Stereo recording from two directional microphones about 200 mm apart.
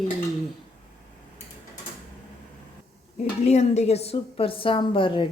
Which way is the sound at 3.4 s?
35° left (ahead or behind).